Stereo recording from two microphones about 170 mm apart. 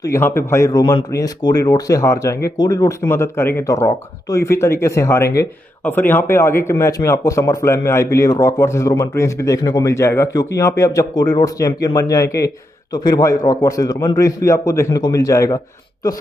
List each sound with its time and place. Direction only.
0.0 s a man's voice: 15° left (ahead or behind)